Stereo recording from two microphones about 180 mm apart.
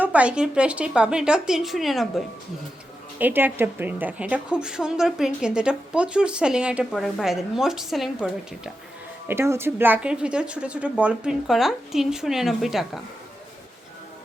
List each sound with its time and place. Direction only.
0.0 s a woman's voice: 10° right (ahead or behind)
9.2 s a woman's voice: 15° right (ahead or behind)